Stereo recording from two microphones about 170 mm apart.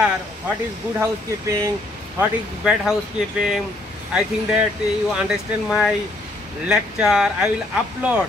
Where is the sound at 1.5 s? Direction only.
15° right (ahead or behind).